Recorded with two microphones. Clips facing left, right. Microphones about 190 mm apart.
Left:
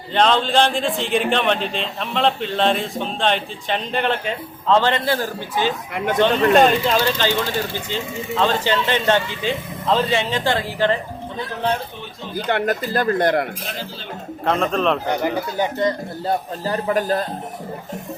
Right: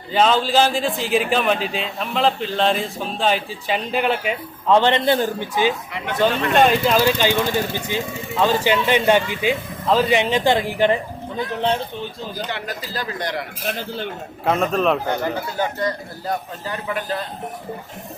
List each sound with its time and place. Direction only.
0.1 s a man's voice: 5° right (ahead or behind)
6.6 s speech: centre (ahead or behind)
12.5 s speech: 55° left (ahead or behind)
14.4 s a man's voice: 5° right (ahead or behind)
15.1 s a man's voice: 15° left (ahead or behind); by 17.2 s 45° left (ahead or behind)